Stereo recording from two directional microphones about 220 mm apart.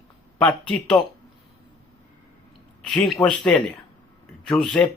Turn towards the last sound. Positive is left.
turn(degrees=0)  # may be behind; listen again after turning